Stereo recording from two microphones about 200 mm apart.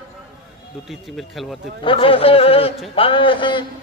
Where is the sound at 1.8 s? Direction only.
25° left (ahead or behind).